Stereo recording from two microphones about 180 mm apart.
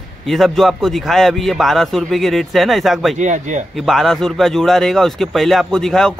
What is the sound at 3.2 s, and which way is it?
Speech, 45° right (ahead or behind).